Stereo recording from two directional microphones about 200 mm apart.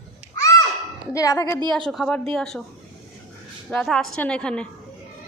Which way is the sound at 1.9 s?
5° left (ahead or behind).